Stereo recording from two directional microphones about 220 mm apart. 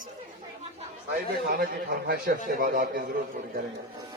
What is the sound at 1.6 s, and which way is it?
A man's voice, 45° right (ahead or behind).